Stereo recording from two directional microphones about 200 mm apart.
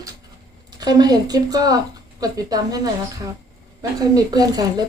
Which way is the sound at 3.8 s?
20° right (ahead or behind).